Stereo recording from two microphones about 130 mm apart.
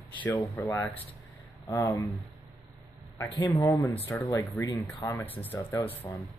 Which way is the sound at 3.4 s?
25° left (ahead or behind).